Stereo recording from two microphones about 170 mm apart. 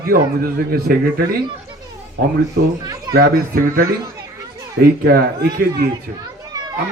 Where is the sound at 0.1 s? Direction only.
60° right (ahead or behind).